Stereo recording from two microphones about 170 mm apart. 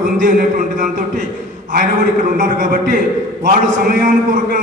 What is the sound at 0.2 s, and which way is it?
A man's voice, 50° right (ahead or behind).